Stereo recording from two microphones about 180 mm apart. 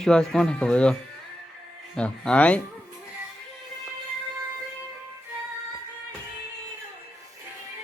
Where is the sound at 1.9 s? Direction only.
5° left (ahead or behind).